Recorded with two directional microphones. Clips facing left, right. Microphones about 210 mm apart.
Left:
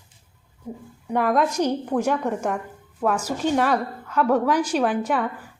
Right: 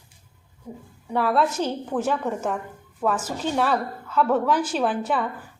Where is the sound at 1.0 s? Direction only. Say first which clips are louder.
Left 1 dB; 15° left (ahead or behind).